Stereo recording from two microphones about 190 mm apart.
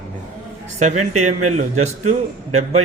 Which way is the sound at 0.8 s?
40° right (ahead or behind).